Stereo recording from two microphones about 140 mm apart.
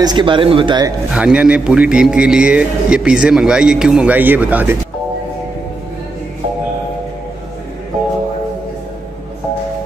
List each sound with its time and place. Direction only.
0.0 s speech: 35° right (ahead or behind)
1.1 s a man's voice: 10° right (ahead or behind)